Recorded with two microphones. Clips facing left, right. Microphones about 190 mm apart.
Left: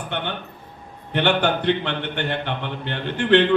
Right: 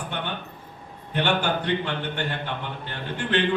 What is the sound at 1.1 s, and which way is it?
A man's voice, 70° left (ahead or behind).